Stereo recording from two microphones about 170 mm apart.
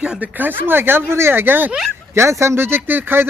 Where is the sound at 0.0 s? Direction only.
5° right (ahead or behind).